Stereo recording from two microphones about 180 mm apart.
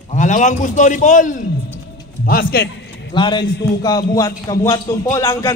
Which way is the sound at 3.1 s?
25° left (ahead or behind).